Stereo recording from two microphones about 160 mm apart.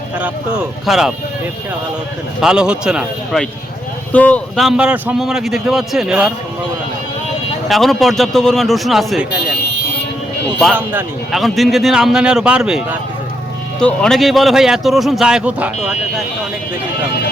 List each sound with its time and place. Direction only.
0.2 s speech: 5° right (ahead or behind)
2.4 s speech: 5° right (ahead or behind)
4.1 s speech: 10° left (ahead or behind)
7.7 s speech: centre (ahead or behind)
10.8 s speech: 10° right (ahead or behind)
11.3 s speech: centre (ahead or behind)